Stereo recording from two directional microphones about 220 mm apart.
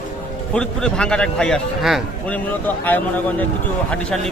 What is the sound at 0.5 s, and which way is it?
A man's voice, 5° left (ahead or behind).